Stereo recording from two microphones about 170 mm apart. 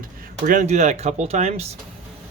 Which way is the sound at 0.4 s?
50° right (ahead or behind).